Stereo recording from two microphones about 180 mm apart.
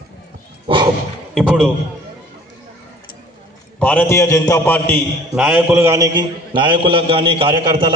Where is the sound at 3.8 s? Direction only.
10° left (ahead or behind).